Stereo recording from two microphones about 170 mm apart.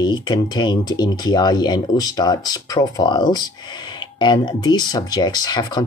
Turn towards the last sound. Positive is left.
turn(degrees=25)  # may be behind; listen again after turning